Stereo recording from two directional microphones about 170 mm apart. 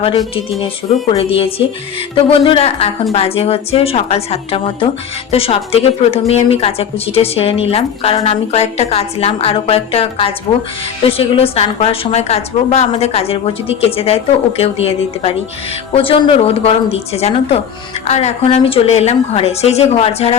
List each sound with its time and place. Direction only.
1.2 s a woman's voice: 35° left (ahead or behind)